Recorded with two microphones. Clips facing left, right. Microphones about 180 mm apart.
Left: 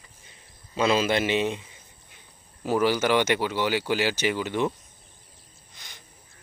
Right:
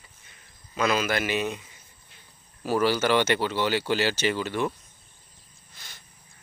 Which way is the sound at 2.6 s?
15° left (ahead or behind).